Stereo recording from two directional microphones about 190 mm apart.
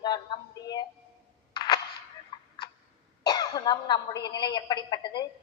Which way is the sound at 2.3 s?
25° left (ahead or behind).